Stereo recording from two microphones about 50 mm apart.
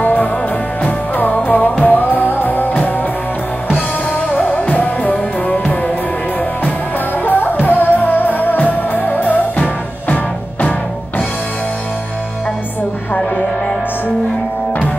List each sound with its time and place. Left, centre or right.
0.0 s music: left
4.3 s music: left
7.2 s music: left